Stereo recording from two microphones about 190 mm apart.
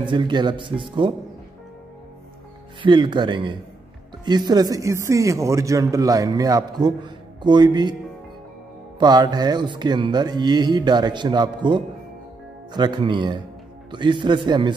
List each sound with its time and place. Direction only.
0.1 s a man's voice: 25° right (ahead or behind)
2.8 s a man's voice: 25° right (ahead or behind)
9.0 s a man's voice: 20° right (ahead or behind)